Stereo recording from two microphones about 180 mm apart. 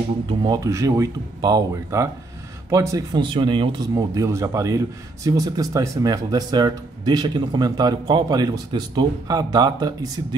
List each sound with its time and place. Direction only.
0.3 s speech: 20° right (ahead or behind)